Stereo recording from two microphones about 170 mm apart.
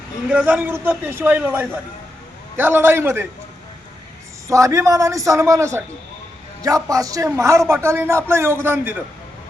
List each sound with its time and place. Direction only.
0.3 s a man's voice: 5° right (ahead or behind)
4.4 s a man's voice: 20° right (ahead or behind)